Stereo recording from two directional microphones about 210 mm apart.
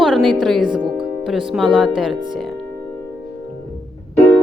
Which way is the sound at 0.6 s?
20° right (ahead or behind).